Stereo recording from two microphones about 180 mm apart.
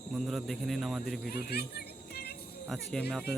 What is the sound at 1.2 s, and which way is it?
Music, 55° left (ahead or behind).